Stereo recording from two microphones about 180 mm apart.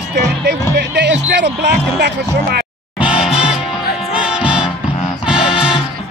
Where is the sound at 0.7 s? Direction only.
75° right (ahead or behind).